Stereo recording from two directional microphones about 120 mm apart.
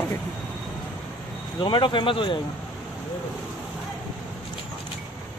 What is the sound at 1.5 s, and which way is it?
Speech, 40° left (ahead or behind).